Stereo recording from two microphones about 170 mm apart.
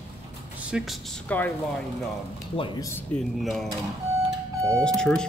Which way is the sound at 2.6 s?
25° left (ahead or behind).